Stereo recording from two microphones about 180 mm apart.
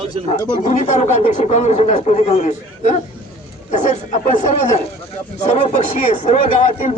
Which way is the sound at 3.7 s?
40° left (ahead or behind).